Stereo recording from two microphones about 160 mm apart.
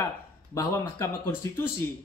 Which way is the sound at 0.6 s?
15° left (ahead or behind).